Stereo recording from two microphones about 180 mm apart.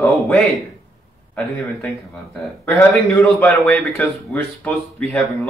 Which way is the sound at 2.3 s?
Centre (ahead or behind).